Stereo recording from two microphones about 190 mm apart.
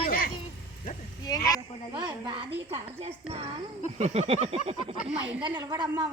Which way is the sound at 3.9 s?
35° right (ahead or behind).